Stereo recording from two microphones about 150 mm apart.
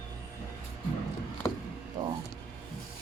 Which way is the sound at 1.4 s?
20° left (ahead or behind).